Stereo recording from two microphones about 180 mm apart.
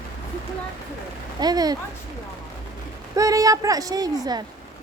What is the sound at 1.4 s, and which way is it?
Speech, 20° right (ahead or behind).